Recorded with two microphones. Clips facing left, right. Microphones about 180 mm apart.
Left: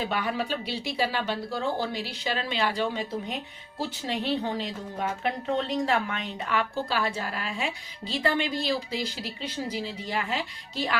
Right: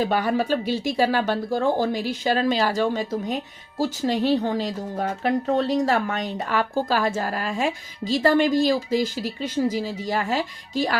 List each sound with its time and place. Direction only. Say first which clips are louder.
0.0 s speech: right 7 dB; 40° right (ahead or behind)